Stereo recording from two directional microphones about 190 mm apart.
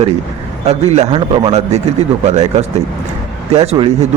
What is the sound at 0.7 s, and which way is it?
A man's voice, 35° right (ahead or behind).